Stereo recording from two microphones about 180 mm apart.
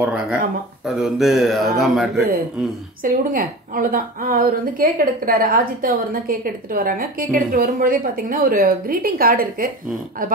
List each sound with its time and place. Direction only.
0.0 s a man's voice: 5° right (ahead or behind)
3.0 s a woman's voice: 50° right (ahead or behind)